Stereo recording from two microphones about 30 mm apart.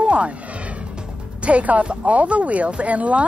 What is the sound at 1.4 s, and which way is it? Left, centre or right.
Speech, right.